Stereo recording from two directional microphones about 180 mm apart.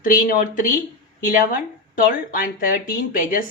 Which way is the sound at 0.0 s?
50° left (ahead or behind).